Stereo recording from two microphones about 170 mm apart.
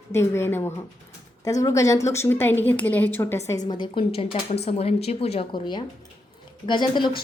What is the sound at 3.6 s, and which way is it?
A woman's voice, 30° left (ahead or behind).